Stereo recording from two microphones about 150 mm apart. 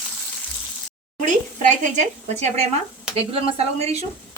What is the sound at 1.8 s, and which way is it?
A woman's voice, 50° right (ahead or behind).